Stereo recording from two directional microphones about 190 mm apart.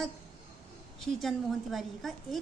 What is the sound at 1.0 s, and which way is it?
A woman's voice, centre (ahead or behind).